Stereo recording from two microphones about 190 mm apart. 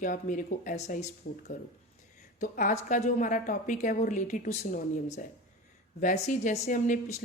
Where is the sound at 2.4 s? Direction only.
40° left (ahead or behind).